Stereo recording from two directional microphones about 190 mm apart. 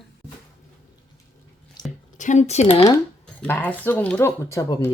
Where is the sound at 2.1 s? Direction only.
40° left (ahead or behind); by 3.0 s 25° left (ahead or behind).